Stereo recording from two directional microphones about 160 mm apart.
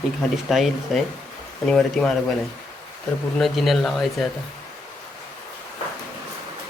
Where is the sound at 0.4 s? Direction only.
Centre (ahead or behind).